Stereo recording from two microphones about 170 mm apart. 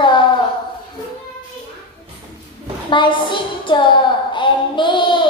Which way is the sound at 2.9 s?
30° left (ahead or behind).